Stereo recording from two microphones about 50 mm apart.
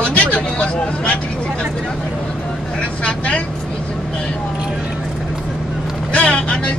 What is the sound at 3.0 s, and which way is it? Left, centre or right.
Speech, left.